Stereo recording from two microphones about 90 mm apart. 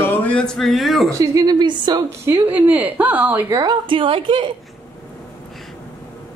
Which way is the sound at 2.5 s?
20° right (ahead or behind).